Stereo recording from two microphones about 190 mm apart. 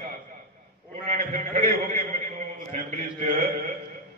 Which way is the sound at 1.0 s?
40° right (ahead or behind).